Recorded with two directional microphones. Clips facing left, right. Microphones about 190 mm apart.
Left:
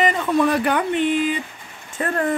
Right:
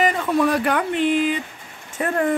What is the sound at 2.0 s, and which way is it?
Speech, 10° right (ahead or behind).